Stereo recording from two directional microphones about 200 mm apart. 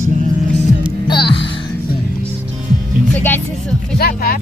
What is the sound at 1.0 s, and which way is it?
Music, 25° left (ahead or behind).